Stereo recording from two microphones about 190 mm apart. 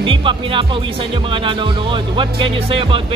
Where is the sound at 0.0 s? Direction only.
25° right (ahead or behind).